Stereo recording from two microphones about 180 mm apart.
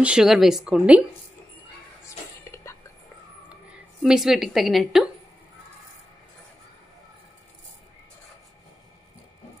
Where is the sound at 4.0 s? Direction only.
Centre (ahead or behind).